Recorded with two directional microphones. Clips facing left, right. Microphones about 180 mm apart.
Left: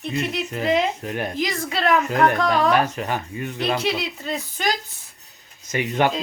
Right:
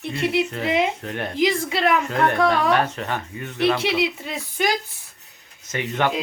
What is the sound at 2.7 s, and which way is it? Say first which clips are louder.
Speech: left 1 dB; 10° left (ahead or behind).